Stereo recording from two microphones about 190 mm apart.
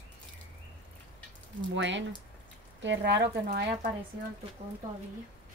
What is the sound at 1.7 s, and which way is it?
Speech, 70° right (ahead or behind).